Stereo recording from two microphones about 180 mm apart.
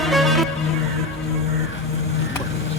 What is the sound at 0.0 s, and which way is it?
Music, centre (ahead or behind).